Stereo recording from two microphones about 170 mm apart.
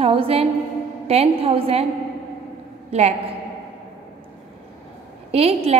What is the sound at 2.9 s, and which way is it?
Speech, 40° right (ahead or behind).